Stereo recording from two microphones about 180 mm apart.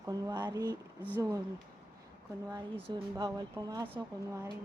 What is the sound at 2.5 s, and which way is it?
Speech, 20° right (ahead or behind).